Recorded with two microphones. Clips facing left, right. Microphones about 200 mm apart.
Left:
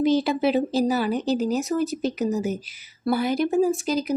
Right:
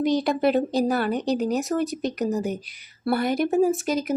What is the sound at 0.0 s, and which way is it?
Speech, centre (ahead or behind).